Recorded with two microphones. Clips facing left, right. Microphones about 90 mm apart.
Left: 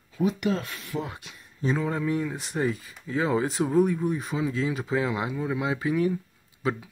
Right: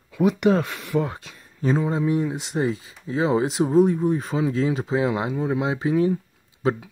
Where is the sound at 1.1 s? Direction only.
35° right (ahead or behind).